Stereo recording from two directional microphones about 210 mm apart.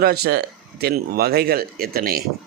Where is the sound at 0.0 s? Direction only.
50° right (ahead or behind).